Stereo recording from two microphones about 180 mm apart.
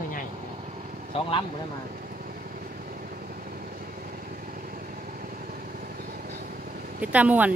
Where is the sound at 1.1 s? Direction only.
35° left (ahead or behind).